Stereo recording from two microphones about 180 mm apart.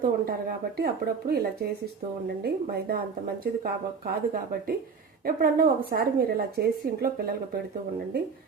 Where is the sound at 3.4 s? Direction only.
55° right (ahead or behind).